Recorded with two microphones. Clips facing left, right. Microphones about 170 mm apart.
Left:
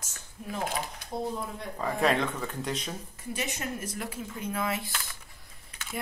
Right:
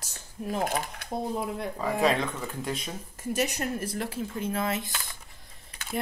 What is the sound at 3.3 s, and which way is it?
Speech, 40° right (ahead or behind).